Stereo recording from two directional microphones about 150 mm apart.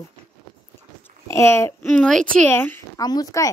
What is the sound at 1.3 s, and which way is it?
A woman's voice, 15° left (ahead or behind).